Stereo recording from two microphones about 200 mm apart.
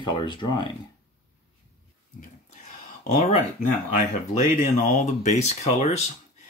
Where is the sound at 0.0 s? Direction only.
25° left (ahead or behind).